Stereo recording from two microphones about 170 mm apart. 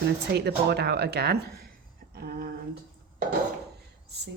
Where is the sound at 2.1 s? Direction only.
65° right (ahead or behind).